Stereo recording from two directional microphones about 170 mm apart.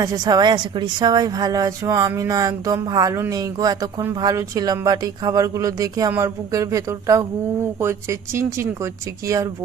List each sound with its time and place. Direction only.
0.0 s a woman's voice: 20° right (ahead or behind)